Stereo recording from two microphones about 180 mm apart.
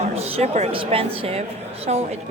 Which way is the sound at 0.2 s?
35° right (ahead or behind).